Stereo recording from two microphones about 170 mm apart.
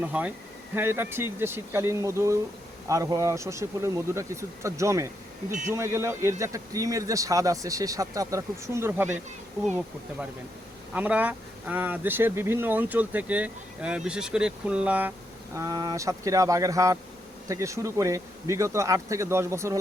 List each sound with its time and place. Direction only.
0.0 s speech: 10° right (ahead or behind)
5.5 s speech: 45° right (ahead or behind)
5.7 s a man's voice: 15° right (ahead or behind)
10.9 s speech: 10° right (ahead or behind)
15.5 s a man's voice: 20° right (ahead or behind)